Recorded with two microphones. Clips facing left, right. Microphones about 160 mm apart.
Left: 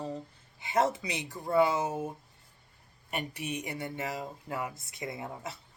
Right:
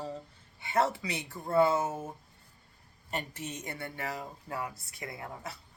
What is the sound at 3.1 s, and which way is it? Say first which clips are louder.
Speech: left 2 dB; 15° left (ahead or behind).